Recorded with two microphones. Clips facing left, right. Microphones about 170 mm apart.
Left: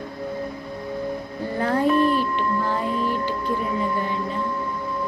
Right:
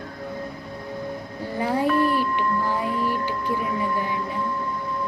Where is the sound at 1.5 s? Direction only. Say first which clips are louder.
Left 2 dB; 10° right (ahead or behind).